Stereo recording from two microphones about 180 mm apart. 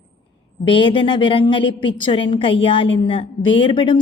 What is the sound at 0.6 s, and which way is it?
A woman's voice, 25° left (ahead or behind).